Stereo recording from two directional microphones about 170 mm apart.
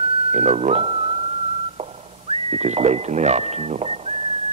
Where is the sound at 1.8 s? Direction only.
35° right (ahead or behind).